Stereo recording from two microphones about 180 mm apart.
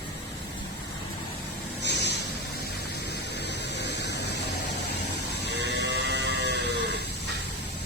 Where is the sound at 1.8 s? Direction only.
70° left (ahead or behind).